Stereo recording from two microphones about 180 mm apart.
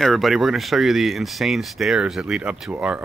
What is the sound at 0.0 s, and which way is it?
Speech, centre (ahead or behind).